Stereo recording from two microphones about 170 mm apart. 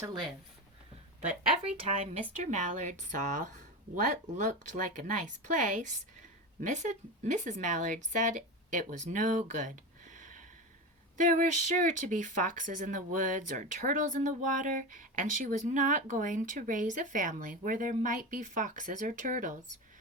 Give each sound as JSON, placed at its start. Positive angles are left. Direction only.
{"t": 1.6, "sound": "speech", "side_deg": -40}